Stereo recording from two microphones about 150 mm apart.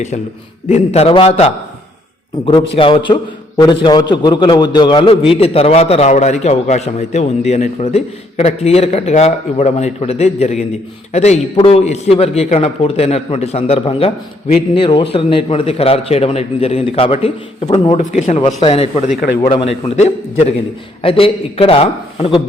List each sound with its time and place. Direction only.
0.7 s a man's voice: 45° left (ahead or behind)